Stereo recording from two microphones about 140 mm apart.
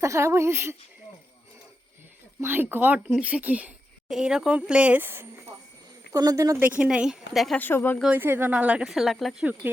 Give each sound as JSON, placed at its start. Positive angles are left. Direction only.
{"t": 0.0, "sound": "a woman's voice", "side_deg": -20}
{"t": 2.4, "sound": "speech", "side_deg": -15}
{"t": 6.1, "sound": "a woman's voice", "side_deg": -25}
{"t": 6.6, "sound": "speech", "side_deg": -10}
{"t": 7.6, "sound": "speech", "side_deg": 15}
{"t": 8.0, "sound": "speech", "side_deg": -15}